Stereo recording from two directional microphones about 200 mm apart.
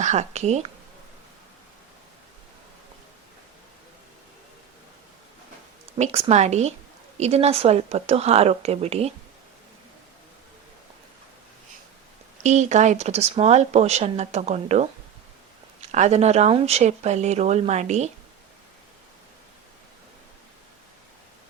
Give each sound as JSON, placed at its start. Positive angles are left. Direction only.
{"t": 0.0, "sound": "speech", "side_deg": -35}
{"t": 6.0, "sound": "speech", "side_deg": -30}
{"t": 12.4, "sound": "speech", "side_deg": -35}
{"t": 15.9, "sound": "speech", "side_deg": -35}